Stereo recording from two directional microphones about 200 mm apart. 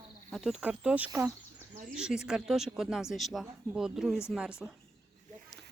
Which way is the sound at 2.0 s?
5° right (ahead or behind).